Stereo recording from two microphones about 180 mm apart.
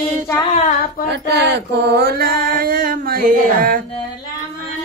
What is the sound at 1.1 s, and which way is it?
Mantra, 70° right (ahead or behind).